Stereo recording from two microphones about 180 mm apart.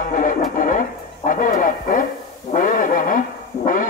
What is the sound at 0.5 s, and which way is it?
Radio, 50° left (ahead or behind).